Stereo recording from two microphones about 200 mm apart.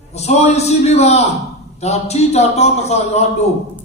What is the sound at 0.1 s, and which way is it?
A man's voice, 35° left (ahead or behind).